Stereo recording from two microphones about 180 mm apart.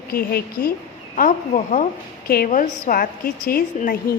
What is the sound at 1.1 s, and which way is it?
A woman's voice, 45° left (ahead or behind).